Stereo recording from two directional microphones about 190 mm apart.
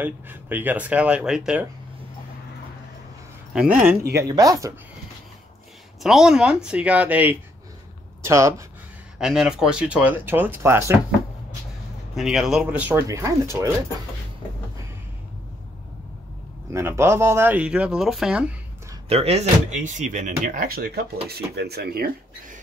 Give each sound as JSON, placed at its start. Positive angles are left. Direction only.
{"t": 0.0, "sound": "speech", "side_deg": -10}
{"t": 3.5, "sound": "speech", "side_deg": -5}
{"t": 6.0, "sound": "speech", "side_deg": -5}
{"t": 9.2, "sound": "speech", "side_deg": -5}
{"t": 12.2, "sound": "speech", "side_deg": 0}
{"t": 16.7, "sound": "speech", "side_deg": -15}
{"t": 19.0, "sound": "speech", "side_deg": -30}